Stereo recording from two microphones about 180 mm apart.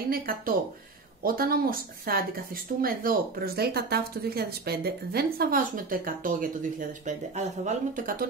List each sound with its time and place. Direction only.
0.1 s speech: 55° right (ahead or behind)